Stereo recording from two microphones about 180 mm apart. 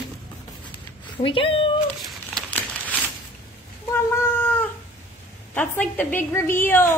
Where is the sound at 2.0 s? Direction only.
5° left (ahead or behind).